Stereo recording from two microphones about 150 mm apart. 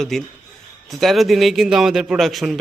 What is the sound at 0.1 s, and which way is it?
A man's voice, centre (ahead or behind).